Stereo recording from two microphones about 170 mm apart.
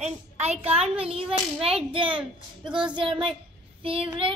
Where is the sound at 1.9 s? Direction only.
30° right (ahead or behind).